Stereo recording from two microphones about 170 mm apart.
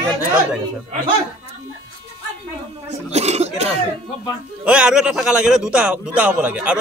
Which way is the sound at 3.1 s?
40° right (ahead or behind).